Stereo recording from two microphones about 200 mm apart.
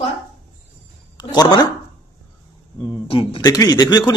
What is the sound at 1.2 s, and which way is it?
Speech, 20° left (ahead or behind).